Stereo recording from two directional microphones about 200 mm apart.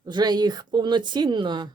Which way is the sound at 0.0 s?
20° right (ahead or behind).